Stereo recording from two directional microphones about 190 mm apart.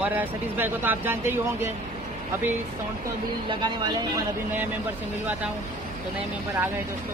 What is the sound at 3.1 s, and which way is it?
Speech, 25° right (ahead or behind).